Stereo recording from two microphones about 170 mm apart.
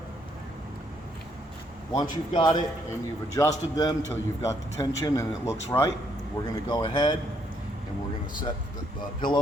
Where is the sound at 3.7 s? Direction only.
25° left (ahead or behind).